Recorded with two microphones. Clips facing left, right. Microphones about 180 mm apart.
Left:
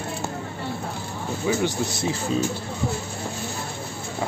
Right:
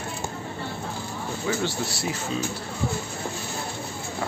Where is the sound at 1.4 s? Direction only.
20° left (ahead or behind).